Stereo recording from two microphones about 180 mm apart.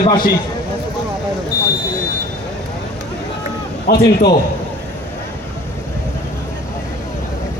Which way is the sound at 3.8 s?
65° left (ahead or behind).